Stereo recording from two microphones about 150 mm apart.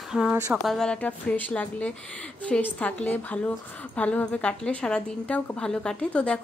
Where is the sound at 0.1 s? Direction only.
5° right (ahead or behind).